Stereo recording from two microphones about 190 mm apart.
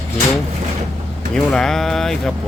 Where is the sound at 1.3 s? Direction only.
5° left (ahead or behind).